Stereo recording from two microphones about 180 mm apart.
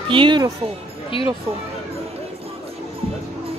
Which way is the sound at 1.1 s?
30° left (ahead or behind).